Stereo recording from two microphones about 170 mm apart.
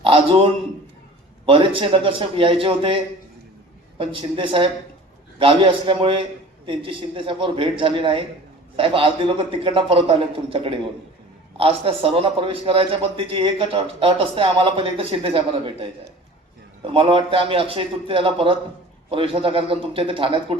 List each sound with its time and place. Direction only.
0.0 s a man's voice: 35° right (ahead or behind)